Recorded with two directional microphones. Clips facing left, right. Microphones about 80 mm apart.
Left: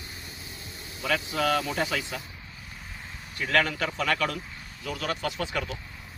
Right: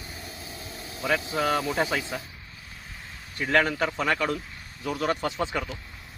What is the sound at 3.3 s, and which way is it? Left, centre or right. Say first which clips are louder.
Speech: right 2 dB; centre.